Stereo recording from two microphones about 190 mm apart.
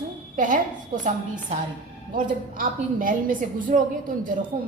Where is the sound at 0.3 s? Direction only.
45° right (ahead or behind).